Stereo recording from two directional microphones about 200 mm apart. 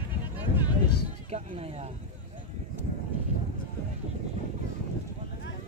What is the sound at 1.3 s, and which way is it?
Speech, 30° right (ahead or behind).